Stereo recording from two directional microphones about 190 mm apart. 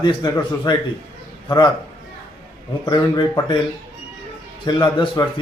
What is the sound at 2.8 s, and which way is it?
Speech, 20° left (ahead or behind).